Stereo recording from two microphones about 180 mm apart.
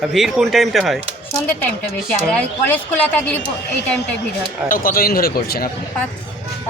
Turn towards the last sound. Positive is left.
turn(degrees=55)  # may be behind; listen again after turning